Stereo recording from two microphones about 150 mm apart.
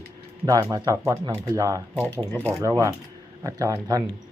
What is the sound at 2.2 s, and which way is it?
Speech, 10° left (ahead or behind).